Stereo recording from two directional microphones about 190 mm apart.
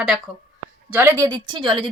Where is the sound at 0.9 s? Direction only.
10° right (ahead or behind).